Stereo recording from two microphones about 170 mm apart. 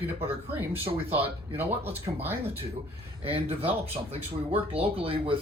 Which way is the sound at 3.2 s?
35° right (ahead or behind).